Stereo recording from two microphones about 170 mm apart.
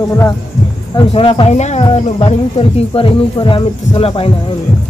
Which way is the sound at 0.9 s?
30° left (ahead or behind).